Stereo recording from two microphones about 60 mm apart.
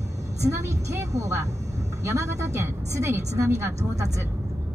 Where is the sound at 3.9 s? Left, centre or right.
Right.